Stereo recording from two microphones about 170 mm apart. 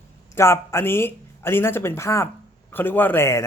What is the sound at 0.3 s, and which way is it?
Speech, 15° left (ahead or behind).